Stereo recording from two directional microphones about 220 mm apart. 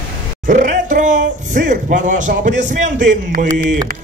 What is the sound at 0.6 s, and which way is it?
Music, 40° right (ahead or behind).